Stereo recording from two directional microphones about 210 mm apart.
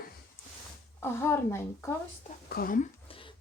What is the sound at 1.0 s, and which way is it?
Speech, 10° left (ahead or behind).